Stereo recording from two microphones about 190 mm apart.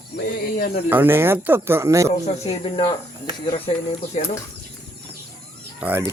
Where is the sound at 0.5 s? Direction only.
50° left (ahead or behind).